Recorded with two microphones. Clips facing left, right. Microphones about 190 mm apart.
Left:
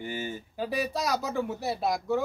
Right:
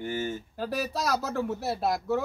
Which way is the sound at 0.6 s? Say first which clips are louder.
Left 1 dB; centre (ahead or behind).